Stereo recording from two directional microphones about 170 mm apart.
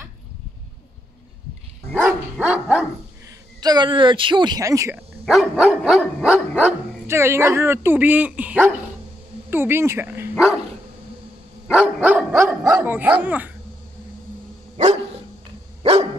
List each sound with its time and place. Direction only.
2.3 s dog: 5° right (ahead or behind)
3.6 s a woman's voice: 25° right (ahead or behind)
5.2 s dog: centre (ahead or behind)
9.5 s speech: 15° right (ahead or behind)
10.3 s dog: centre (ahead or behind)
11.7 s dog: 5° right (ahead or behind)
15.8 s dog: 35° right (ahead or behind)